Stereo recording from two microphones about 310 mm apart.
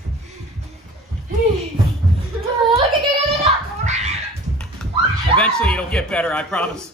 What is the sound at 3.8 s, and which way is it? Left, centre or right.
Bird, right.